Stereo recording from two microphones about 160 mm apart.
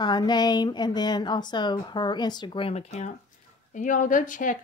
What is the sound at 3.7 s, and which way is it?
Speech, 55° left (ahead or behind).